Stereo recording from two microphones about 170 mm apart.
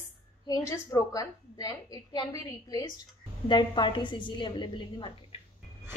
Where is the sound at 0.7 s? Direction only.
20° left (ahead or behind).